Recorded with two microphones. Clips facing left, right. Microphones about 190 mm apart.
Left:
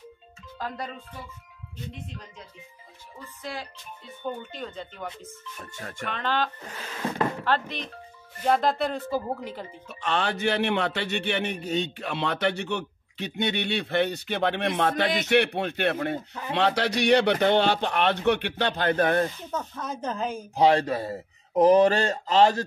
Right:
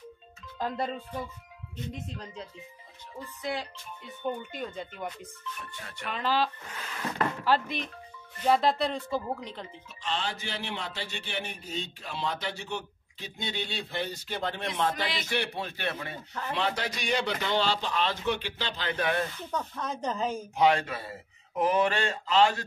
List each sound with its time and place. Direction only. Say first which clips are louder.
0.6 s music: right 3 dB; 25° right (ahead or behind)
4.5 s speech: even; 10° right (ahead or behind)
5.6 s speech: left 5 dB; 45° left (ahead or behind)
6.0 s speech: even; 5° right (ahead or behind)
7.0 s a sound: left 4 dB; 25° left (ahead or behind)
7.4 s speech: even; 10° right (ahead or behind)
9.8 s music: left 6 dB; 60° left (ahead or behind)
16.5 s a man's voice: left 8 dB; 70° left (ahead or behind); by 19.2 s 50° left (ahead or behind)
19.5 s speech: left 1 dB; 5° left (ahead or behind)
20.5 s speech: left 5 dB; 35° left (ahead or behind)